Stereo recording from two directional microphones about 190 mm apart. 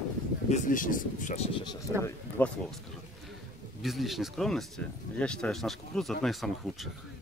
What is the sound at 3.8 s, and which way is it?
Speech, centre (ahead or behind).